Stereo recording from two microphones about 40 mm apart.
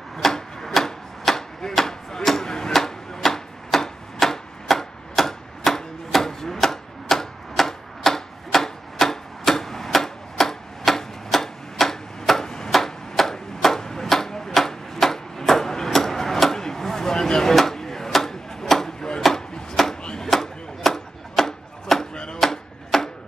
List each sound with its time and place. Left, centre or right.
0.2 s chopping: centre
2.7 s tick-tock: centre
17.6 s chop: centre
19.7 s a sound: centre
20.0 s chopping: centre
20.2 s a sound: centre
22.1 s chop: centre
22.4 s chopping: centre